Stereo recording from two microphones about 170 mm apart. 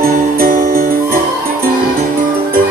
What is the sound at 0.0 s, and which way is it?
Music, 60° right (ahead or behind).